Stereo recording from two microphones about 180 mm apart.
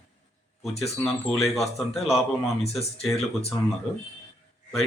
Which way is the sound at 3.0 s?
Centre (ahead or behind).